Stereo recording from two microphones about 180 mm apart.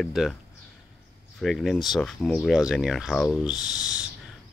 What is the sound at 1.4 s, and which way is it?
Speech, centre (ahead or behind).